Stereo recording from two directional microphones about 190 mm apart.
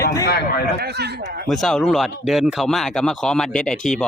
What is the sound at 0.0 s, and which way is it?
Speech, 15° left (ahead or behind).